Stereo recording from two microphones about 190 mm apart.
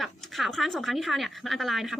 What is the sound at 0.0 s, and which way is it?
A woman's voice, centre (ahead or behind).